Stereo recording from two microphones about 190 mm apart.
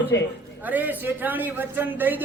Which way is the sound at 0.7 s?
10° right (ahead or behind).